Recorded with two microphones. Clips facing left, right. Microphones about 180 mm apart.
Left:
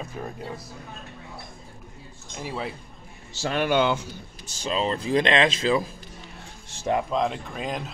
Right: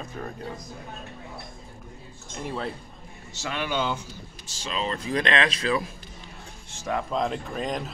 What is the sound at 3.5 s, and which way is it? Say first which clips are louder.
Speech: left 6 dB; 60° left (ahead or behind).